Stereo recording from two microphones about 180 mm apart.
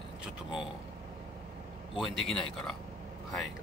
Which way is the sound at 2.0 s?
Centre (ahead or behind).